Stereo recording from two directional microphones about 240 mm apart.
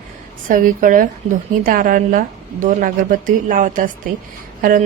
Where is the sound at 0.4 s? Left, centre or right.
Right.